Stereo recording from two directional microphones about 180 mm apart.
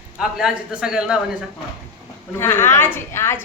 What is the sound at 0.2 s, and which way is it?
A man's voice, 5° right (ahead or behind).